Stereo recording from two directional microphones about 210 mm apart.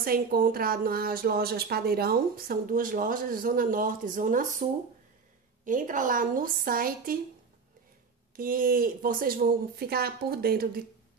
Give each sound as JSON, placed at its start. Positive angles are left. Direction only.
{"t": 0.0, "sound": "a woman's voice", "side_deg": -45}
{"t": 5.7, "sound": "a woman's voice", "side_deg": -40}
{"t": 8.4, "sound": "a woman's voice", "side_deg": -40}